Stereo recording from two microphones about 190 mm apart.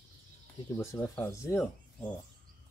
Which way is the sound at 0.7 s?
15° left (ahead or behind).